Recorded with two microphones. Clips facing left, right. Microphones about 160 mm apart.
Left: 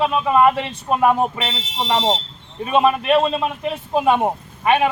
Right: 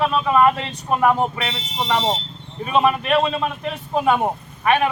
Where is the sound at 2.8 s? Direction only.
5° left (ahead or behind).